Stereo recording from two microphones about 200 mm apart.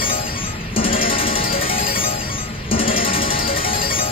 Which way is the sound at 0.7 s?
25° left (ahead or behind).